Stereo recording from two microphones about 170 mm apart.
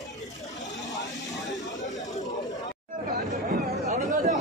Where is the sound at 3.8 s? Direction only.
45° right (ahead or behind).